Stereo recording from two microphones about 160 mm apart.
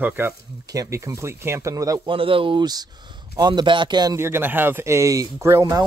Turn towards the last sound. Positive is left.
turn(degrees=-20)  # may be behind; listen again after turning